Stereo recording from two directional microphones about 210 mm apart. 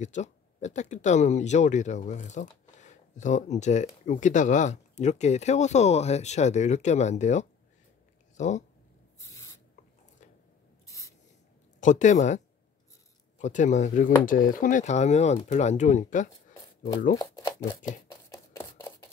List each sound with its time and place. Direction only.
0.0 s speech: 35° left (ahead or behind)
9.2 s owl: 15° left (ahead or behind)
10.9 s spray: 15° left (ahead or behind)
11.8 s speech: 35° left (ahead or behind)
13.4 s speech: 35° left (ahead or behind)
18.3 s a sound: 15° left (ahead or behind)